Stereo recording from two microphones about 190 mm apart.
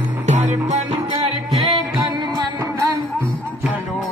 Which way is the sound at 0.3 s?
35° right (ahead or behind).